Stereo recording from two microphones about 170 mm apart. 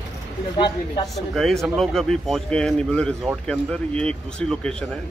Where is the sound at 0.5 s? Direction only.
25° left (ahead or behind).